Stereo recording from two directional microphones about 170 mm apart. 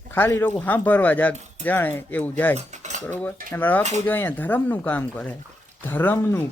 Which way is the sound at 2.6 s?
45° right (ahead or behind).